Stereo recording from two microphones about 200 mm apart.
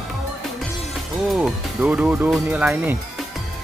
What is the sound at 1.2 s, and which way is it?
Speech, 5° right (ahead or behind).